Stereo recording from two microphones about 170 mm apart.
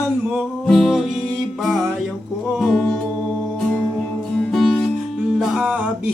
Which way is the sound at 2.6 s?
Centre (ahead or behind).